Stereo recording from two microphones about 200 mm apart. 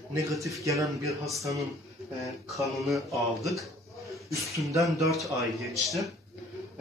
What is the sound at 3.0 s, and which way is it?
Speech, 15° right (ahead or behind).